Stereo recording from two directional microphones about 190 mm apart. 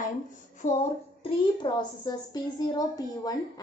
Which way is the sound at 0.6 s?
40° left (ahead or behind).